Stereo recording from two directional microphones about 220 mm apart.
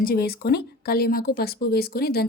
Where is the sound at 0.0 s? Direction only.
45° left (ahead or behind).